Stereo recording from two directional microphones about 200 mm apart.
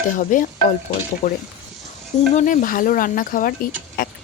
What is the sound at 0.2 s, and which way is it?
Speech, 40° left (ahead or behind).